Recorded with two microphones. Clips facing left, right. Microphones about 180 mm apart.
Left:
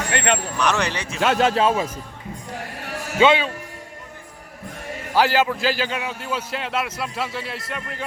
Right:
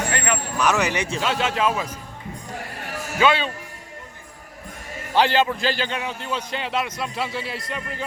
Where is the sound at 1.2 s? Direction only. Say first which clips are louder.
Left 6 dB; 45° left (ahead or behind); by 1.9 s 30° left (ahead or behind).